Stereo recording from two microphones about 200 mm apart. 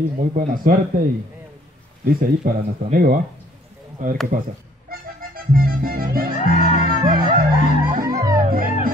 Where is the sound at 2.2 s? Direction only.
45° right (ahead or behind).